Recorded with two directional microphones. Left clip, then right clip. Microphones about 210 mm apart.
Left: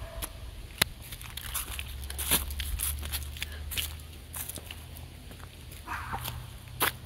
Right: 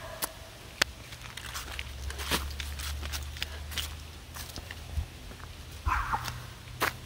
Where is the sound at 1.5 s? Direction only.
60° left (ahead or behind).